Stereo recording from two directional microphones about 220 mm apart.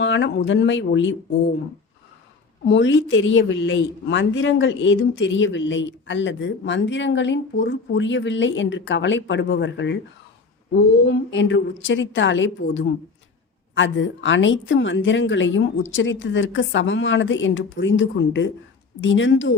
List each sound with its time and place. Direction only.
0.0 s a woman's voice: 55° left (ahead or behind)
2.6 s a woman's voice: 55° left (ahead or behind)
11.0 s a woman's voice: 55° left (ahead or behind)